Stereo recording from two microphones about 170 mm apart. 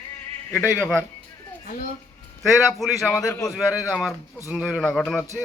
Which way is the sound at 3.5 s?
Centre (ahead or behind).